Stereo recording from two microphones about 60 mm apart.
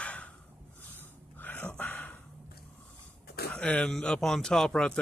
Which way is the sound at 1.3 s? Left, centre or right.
Left.